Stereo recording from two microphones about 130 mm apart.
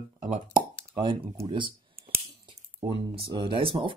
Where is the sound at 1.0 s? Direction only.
40° right (ahead or behind).